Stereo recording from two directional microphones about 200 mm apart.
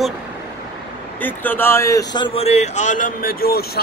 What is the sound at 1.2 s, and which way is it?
A man's voice, 10° left (ahead or behind).